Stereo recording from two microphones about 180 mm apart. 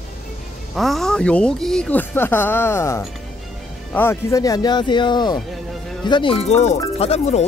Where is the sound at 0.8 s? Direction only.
Centre (ahead or behind).